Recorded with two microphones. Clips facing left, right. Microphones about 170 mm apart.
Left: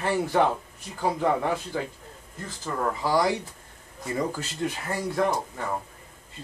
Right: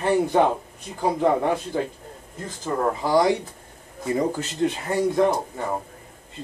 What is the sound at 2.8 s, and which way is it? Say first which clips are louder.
Speech: right 4 dB; 20° right (ahead or behind).